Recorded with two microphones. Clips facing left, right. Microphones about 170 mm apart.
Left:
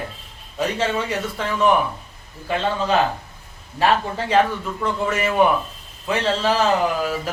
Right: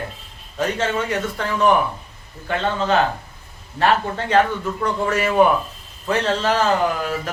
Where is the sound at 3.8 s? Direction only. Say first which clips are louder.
Right 1 dB; 5° left (ahead or behind).